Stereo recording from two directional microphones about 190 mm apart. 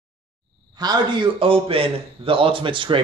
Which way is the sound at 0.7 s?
20° right (ahead or behind).